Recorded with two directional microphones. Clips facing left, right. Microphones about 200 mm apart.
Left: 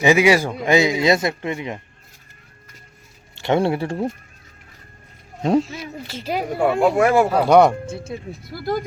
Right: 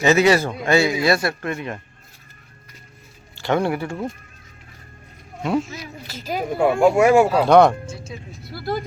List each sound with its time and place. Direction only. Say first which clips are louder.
0.0 s a man's voice: left 1 dB; 10° left (ahead or behind)
3.3 s speech: left 2 dB; 20° left (ahead or behind)
5.4 s speech: left 4 dB; 35° left (ahead or behind)
6.8 s speech: right 3 dB; 10° right (ahead or behind)
7.4 s a man's voice: left 2 dB; 10° left (ahead or behind)
7.9 s speech: left 5 dB; 55° left (ahead or behind)